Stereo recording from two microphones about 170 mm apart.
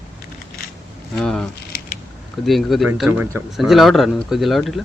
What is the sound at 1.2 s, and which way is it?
Speech, centre (ahead or behind).